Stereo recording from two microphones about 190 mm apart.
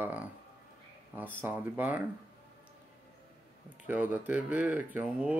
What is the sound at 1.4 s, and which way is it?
Speech, 10° right (ahead or behind).